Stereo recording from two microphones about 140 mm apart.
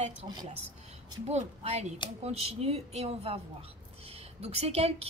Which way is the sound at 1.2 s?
50° right (ahead or behind).